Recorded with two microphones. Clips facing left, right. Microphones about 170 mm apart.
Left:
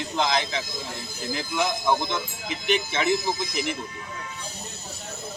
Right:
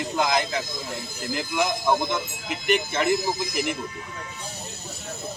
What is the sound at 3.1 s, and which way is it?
Speech, 55° right (ahead or behind).